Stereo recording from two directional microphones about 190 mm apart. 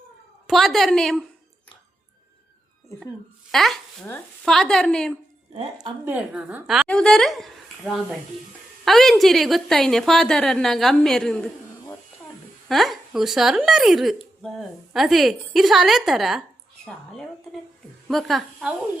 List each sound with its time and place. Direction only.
0.4 s a woman's voice: centre (ahead or behind)
3.5 s a woman's voice: centre (ahead or behind)
5.7 s a woman's voice: 15° right (ahead or behind); by 18.7 s centre (ahead or behind)